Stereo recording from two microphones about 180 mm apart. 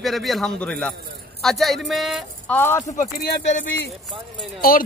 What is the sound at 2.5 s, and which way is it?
Speech, 10° left (ahead or behind).